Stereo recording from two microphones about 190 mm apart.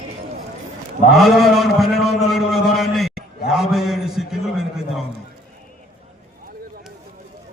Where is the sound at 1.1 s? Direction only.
Centre (ahead or behind).